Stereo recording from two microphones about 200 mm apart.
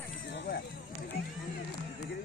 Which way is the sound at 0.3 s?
55° left (ahead or behind).